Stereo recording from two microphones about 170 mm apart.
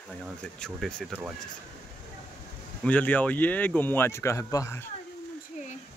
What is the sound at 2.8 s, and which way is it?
Speech, 10° left (ahead or behind).